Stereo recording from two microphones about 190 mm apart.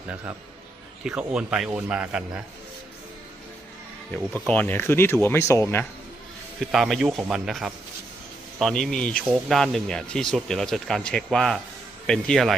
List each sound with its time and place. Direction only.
1.0 s speech: 5° right (ahead or behind)
4.2 s speech: 5° right (ahead or behind)
4.5 s speech: 10° left (ahead or behind)
6.6 s speech: centre (ahead or behind)